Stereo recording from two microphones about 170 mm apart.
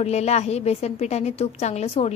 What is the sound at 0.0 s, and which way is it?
A woman's voice, 40° left (ahead or behind).